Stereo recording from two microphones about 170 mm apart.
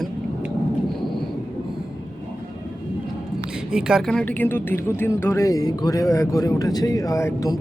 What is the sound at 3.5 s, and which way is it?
A woman's voice, 5° right (ahead or behind).